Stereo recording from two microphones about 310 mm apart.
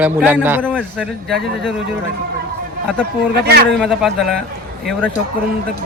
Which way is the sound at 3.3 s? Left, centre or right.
Right.